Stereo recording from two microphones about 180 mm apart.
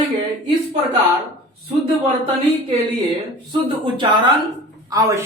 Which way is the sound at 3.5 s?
25° right (ahead or behind).